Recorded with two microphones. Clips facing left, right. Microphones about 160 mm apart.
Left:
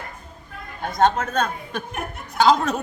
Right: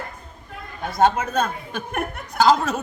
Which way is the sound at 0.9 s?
10° right (ahead or behind).